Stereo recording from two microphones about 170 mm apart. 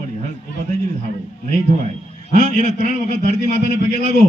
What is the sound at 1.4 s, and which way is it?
A man's voice, 45° right (ahead or behind).